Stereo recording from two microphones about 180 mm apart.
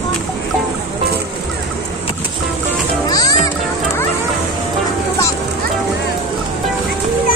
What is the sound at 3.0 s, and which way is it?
Music, 20° left (ahead or behind).